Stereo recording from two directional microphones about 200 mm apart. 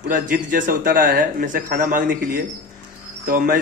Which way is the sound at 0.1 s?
40° right (ahead or behind).